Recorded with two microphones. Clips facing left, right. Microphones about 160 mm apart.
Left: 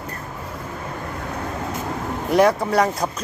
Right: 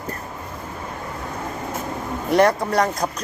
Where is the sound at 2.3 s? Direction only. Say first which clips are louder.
Even; centre (ahead or behind).